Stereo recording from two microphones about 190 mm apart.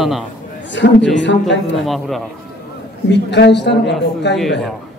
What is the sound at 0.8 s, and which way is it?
Speech, 65° left (ahead or behind).